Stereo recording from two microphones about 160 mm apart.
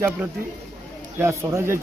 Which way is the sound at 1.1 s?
15° right (ahead or behind).